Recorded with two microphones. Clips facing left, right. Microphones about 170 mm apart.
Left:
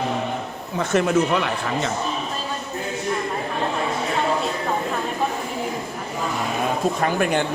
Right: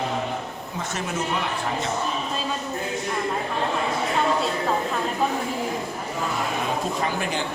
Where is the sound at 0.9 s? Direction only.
65° left (ahead or behind).